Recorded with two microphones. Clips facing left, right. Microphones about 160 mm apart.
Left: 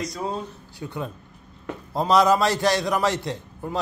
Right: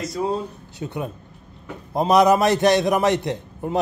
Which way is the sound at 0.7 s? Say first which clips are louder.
Right 3 dB; 20° right (ahead or behind).